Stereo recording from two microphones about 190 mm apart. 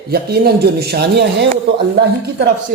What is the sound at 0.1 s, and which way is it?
Speech, 55° right (ahead or behind).